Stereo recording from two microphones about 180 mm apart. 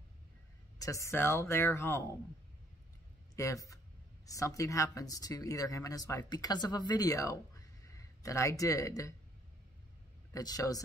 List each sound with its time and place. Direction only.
0.7 s speech: 20° left (ahead or behind)
3.3 s speech: 20° left (ahead or behind)
10.3 s speech: 20° left (ahead or behind)